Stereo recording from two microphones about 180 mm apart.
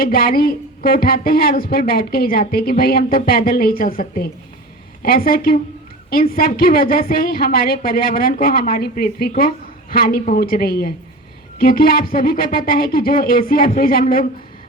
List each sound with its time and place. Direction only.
0.0 s a woman's voice: 55° left (ahead or behind)